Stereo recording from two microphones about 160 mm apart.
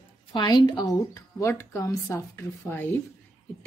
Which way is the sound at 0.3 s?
30° left (ahead or behind).